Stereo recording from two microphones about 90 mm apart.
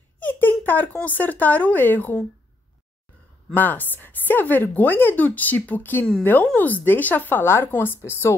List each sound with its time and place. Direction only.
0.2 s a sound: 20° left (ahead or behind)
0.9 s speech: 20° left (ahead or behind)
3.5 s speech: 20° left (ahead or behind)